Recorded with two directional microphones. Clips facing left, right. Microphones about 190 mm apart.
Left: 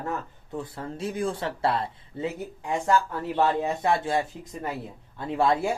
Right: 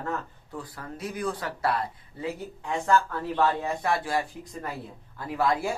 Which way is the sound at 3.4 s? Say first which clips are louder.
Left 2 dB; 20° left (ahead or behind).